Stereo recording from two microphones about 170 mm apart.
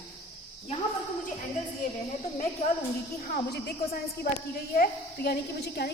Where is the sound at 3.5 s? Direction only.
65° left (ahead or behind).